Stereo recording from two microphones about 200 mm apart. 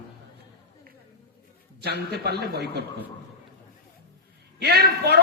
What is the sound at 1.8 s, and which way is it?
A man's voice, 55° right (ahead or behind).